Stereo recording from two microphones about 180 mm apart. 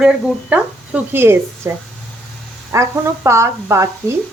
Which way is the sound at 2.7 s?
15° right (ahead or behind).